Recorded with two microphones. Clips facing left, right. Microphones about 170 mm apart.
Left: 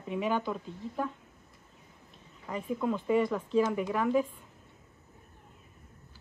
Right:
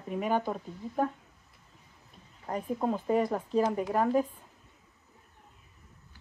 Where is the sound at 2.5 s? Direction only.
40° right (ahead or behind).